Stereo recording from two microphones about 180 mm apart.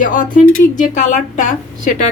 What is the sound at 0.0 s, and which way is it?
A woman's voice, 50° left (ahead or behind).